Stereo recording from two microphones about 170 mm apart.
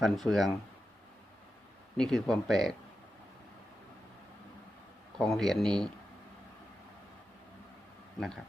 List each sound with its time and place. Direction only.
0.0 s speech: centre (ahead or behind)
2.0 s speech: centre (ahead or behind)
5.1 s speech: centre (ahead or behind)